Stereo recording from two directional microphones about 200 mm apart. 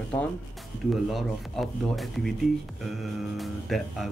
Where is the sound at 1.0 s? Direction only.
Centre (ahead or behind).